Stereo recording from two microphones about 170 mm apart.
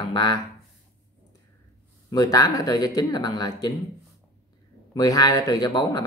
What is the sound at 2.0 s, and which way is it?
A man's voice, 20° left (ahead or behind).